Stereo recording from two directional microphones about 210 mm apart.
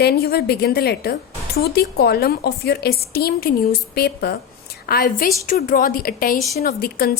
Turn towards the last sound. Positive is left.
turn(degrees=45)  # may be behind; listen again after turning